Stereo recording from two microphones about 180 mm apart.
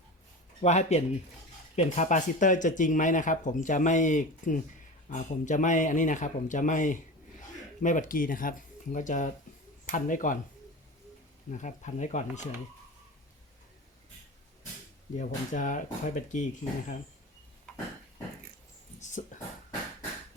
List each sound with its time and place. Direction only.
0.6 s speech: 40° left (ahead or behind)
11.5 s speech: 40° left (ahead or behind)
15.2 s speech: 45° left (ahead or behind)
17.7 s a sound: 5° left (ahead or behind)
18.9 s dog: 40° left (ahead or behind)